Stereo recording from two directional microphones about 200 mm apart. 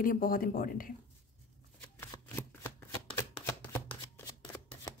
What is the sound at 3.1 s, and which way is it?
Chopping, 10° left (ahead or behind).